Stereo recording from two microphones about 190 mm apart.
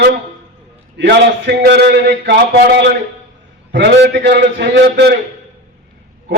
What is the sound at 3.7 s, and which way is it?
A man's voice, 65° right (ahead or behind).